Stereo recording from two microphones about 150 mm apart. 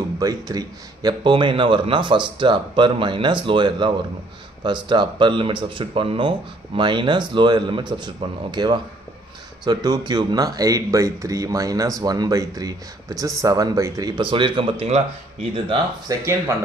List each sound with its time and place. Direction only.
0.2 s speech: 25° right (ahead or behind)
16.1 s speech: 20° right (ahead or behind)